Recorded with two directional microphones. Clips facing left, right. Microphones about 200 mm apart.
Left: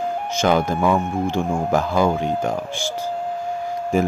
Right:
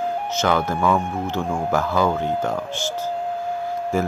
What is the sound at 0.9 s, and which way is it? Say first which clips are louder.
Speech: left 1 dB; centre (ahead or behind).